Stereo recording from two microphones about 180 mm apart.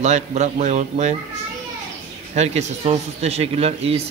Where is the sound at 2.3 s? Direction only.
40° right (ahead or behind).